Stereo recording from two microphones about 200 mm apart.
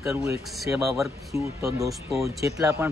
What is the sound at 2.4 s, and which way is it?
Speech, 15° right (ahead or behind).